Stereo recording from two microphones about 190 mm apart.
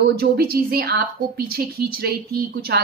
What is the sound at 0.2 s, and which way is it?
A woman's voice, 55° right (ahead or behind).